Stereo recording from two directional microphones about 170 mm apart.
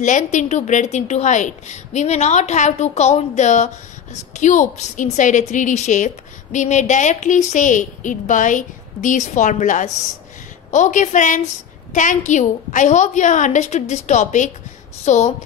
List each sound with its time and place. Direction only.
0.0 s a woman's voice: 45° left (ahead or behind)